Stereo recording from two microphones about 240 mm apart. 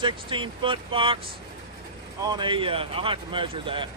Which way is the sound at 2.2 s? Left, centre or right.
Centre.